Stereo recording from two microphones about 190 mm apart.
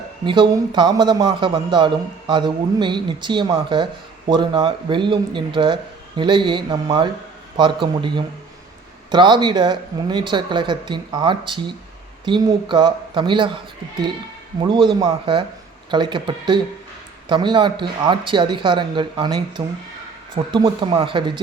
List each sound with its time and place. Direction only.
0.3 s a man's voice: 25° right (ahead or behind)
14.6 s a man's voice: 25° right (ahead or behind)